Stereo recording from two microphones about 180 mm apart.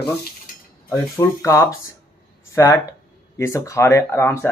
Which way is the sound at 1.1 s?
15° left (ahead or behind).